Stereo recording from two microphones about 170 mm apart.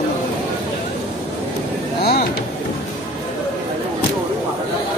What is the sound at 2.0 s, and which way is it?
Vehicle, 70° left (ahead or behind).